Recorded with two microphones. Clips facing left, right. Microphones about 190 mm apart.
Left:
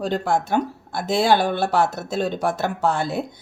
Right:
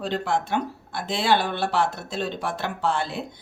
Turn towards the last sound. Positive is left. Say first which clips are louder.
# left 4 dB
turn(degrees=45)  # may be behind; listen again after turning